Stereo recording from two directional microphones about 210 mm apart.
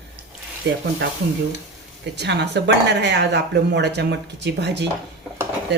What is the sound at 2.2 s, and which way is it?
Speech, 55° right (ahead or behind).